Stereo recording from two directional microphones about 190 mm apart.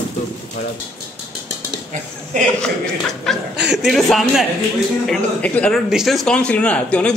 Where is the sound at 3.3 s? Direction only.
5° right (ahead or behind).